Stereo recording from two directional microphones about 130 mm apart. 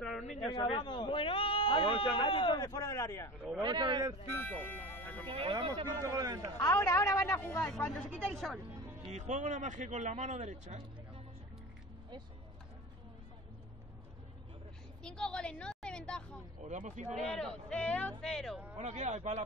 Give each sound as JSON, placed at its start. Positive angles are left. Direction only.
{"t": 0.0, "sound": "a sound", "side_deg": 5}
{"t": 0.7, "sound": "speech", "side_deg": 40}
{"t": 3.6, "sound": "a man's voice", "side_deg": -35}
{"t": 4.3, "sound": "speech", "side_deg": 15}
{"t": 5.3, "sound": "speech", "side_deg": -45}
{"t": 6.0, "sound": "a man's voice", "side_deg": -30}
{"t": 6.6, "sound": "a woman's voice", "side_deg": 20}
{"t": 9.1, "sound": "speech", "side_deg": -65}
{"t": 15.0, "sound": "a woman's voice", "side_deg": 5}
{"t": 16.6, "sound": "speech", "side_deg": -65}
{"t": 17.1, "sound": "a man's voice", "side_deg": 0}
{"t": 18.8, "sound": "speech", "side_deg": -60}